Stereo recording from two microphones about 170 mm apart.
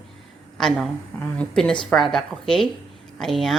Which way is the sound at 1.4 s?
5° left (ahead or behind).